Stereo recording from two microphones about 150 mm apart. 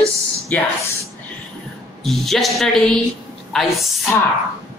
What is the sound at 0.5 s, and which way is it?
Speech, 10° left (ahead or behind).